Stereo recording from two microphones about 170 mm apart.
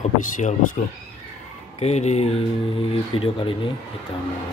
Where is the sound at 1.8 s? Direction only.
40° left (ahead or behind).